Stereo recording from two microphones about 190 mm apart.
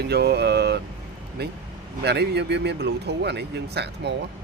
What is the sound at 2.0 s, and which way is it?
A man's voice, 60° right (ahead or behind).